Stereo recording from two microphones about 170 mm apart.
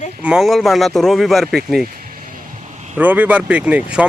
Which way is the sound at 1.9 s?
55° right (ahead or behind).